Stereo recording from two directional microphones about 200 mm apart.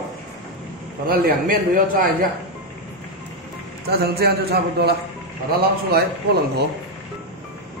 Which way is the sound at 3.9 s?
55° right (ahead or behind).